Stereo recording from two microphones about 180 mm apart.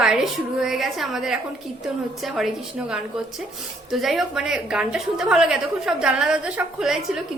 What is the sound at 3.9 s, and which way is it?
A woman's voice, centre (ahead or behind).